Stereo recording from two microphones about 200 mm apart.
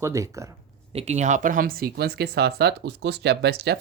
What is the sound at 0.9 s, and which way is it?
Speech, 35° right (ahead or behind).